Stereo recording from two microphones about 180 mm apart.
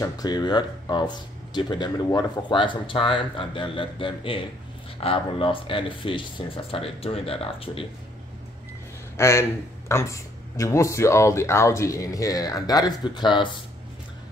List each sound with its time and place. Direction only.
0.0 s speech: 20° left (ahead or behind)
9.1 s speech: 15° left (ahead or behind)